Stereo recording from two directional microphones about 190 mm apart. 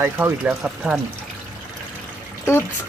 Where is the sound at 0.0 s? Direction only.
10° right (ahead or behind).